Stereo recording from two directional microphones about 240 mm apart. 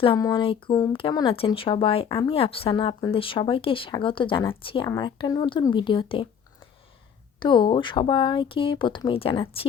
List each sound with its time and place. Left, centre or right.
0.0 s speech: centre
7.3 s speech: centre